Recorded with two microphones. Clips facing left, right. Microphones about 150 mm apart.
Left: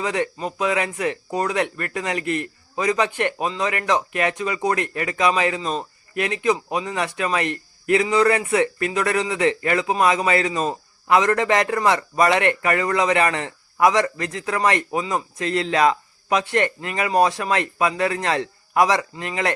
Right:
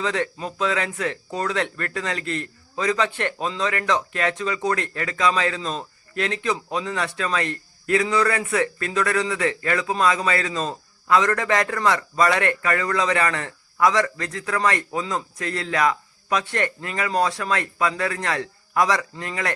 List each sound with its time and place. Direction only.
0.0 s a man's voice: 15° left (ahead or behind)